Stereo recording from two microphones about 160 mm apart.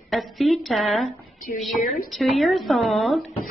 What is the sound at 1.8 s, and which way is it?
Speech, 60° left (ahead or behind).